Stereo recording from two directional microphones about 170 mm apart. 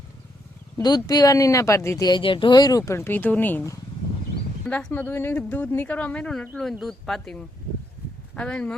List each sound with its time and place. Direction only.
0.8 s a woman's voice: 25° left (ahead or behind); by 8.7 s 5° left (ahead or behind)